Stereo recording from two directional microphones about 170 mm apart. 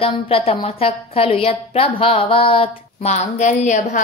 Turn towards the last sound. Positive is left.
turn(degrees=45)  # may be behind; listen again after turning